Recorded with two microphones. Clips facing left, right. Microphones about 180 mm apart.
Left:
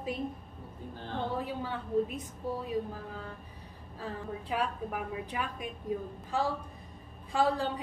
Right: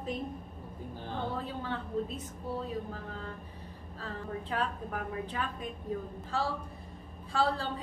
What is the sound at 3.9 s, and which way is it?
A woman's voice, 10° left (ahead or behind).